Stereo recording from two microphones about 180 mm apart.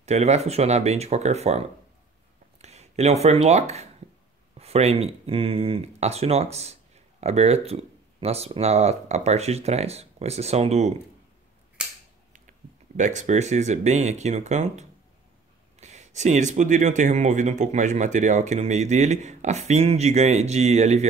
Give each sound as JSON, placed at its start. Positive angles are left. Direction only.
{"t": 0.0, "sound": "speech", "side_deg": -40}
{"t": 11.8, "sound": "cap gun", "side_deg": -5}
{"t": 12.3, "sound": "speech", "side_deg": -45}